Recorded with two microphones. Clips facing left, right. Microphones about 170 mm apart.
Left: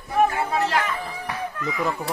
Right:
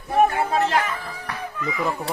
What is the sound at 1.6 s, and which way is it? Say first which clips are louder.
Speech: right 1 dB; centre (ahead or behind).